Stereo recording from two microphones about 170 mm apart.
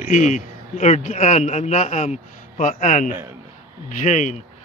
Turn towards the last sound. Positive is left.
turn(degrees=45)  # may be behind; listen again after turning